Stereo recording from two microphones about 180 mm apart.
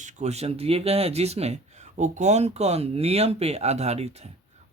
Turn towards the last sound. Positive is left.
turn(degrees=-35)  # may be behind; listen again after turning